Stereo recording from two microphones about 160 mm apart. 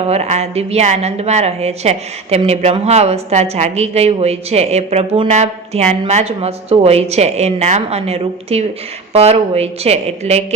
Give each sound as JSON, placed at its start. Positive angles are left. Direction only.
{"t": 0.1, "sound": "speech", "side_deg": -40}